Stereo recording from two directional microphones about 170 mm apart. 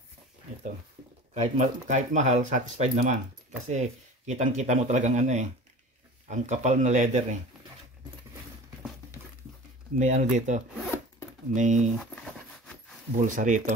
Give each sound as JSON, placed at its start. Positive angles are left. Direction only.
{"t": 1.3, "sound": "speech", "side_deg": -40}
{"t": 9.9, "sound": "speech", "side_deg": -45}
{"t": 12.0, "sound": "a sound", "side_deg": 5}
{"t": 13.2, "sound": "speech", "side_deg": -50}